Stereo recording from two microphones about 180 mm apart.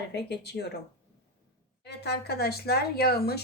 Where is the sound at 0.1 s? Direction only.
70° left (ahead or behind).